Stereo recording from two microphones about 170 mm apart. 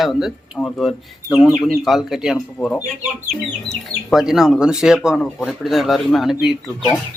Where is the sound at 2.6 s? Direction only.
20° left (ahead or behind).